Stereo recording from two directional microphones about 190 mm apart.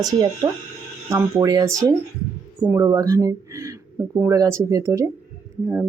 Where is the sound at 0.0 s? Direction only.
20° right (ahead or behind).